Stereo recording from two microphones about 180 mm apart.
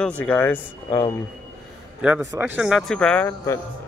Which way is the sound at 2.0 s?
10° right (ahead or behind).